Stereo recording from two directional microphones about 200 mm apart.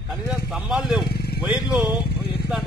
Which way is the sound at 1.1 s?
50° left (ahead or behind).